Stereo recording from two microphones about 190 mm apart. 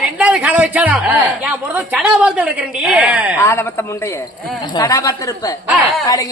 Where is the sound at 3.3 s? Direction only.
15° left (ahead or behind).